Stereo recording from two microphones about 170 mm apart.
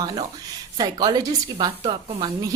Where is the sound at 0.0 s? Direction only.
25° right (ahead or behind).